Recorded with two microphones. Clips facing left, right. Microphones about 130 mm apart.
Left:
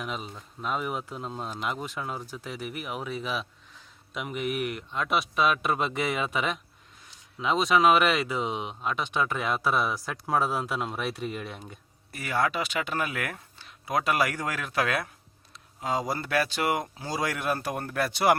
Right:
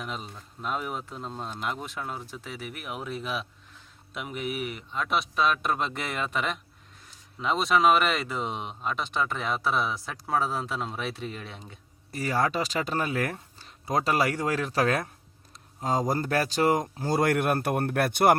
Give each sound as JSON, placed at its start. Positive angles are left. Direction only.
{"t": 0.0, "sound": "speech", "side_deg": 5}
{"t": 12.1, "sound": "speech", "side_deg": -35}
{"t": 17.0, "sound": "speech", "side_deg": -55}